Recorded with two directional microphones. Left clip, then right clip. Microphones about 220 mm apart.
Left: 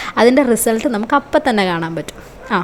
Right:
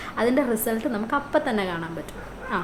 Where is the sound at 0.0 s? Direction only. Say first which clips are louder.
Left 11 dB; 40° left (ahead or behind).